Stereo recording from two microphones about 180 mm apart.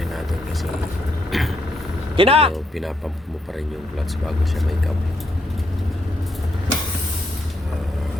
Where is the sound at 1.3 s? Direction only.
Centre (ahead or behind).